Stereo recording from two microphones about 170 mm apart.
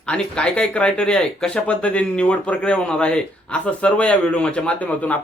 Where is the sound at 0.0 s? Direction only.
5° left (ahead or behind).